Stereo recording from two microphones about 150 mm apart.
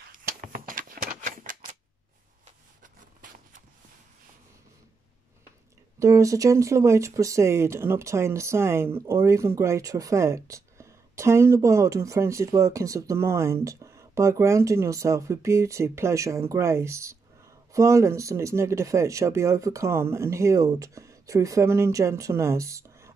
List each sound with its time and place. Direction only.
0.4 s typewriter: 65° right (ahead or behind)
2.4 s a sound: 60° right (ahead or behind)
5.9 s speech: 20° right (ahead or behind)